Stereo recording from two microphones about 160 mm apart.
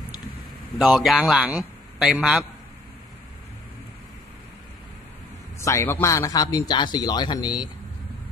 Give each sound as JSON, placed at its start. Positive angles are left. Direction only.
{"t": 0.7, "sound": "a man's voice", "side_deg": 0}
{"t": 5.6, "sound": "a man's voice", "side_deg": 20}